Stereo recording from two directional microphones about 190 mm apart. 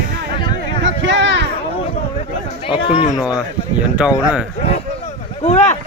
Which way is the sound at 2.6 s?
30° left (ahead or behind).